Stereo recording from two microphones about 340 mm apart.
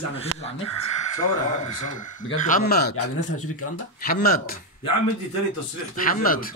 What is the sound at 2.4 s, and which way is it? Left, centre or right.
Speech, left.